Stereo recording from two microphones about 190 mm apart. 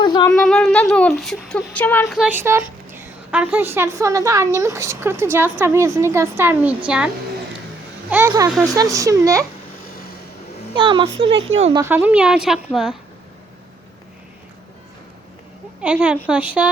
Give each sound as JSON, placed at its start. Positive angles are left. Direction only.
{"t": 0.0, "sound": "a sound", "side_deg": 20}
{"t": 0.3, "sound": "speech", "side_deg": 5}
{"t": 2.1, "sound": "a woman's voice", "side_deg": -5}
{"t": 8.4, "sound": "speech", "side_deg": 0}
{"t": 8.7, "sound": "a woman's voice", "side_deg": -15}
{"t": 10.8, "sound": "a woman's voice", "side_deg": -25}
{"t": 11.3, "sound": "speech", "side_deg": -90}
{"t": 11.7, "sound": "a woman's voice", "side_deg": -15}
{"t": 15.8, "sound": "a woman's voice", "side_deg": -5}